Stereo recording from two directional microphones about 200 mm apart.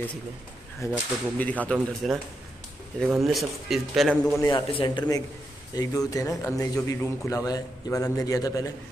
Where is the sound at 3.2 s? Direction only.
Centre (ahead or behind).